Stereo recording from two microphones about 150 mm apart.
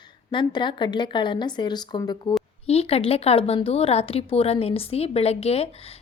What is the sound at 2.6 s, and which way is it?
A woman's voice, 40° left (ahead or behind).